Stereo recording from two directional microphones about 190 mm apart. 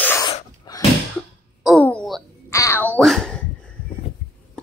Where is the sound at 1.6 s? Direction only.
Centre (ahead or behind).